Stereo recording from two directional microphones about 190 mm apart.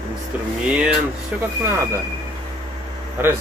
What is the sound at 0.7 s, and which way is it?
Speech, 5° right (ahead or behind).